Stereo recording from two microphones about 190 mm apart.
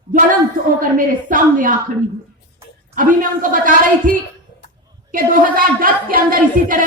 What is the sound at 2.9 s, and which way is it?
Speech, 45° right (ahead or behind).